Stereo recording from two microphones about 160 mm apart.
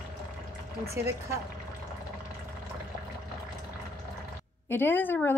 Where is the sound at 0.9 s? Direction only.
15° right (ahead or behind).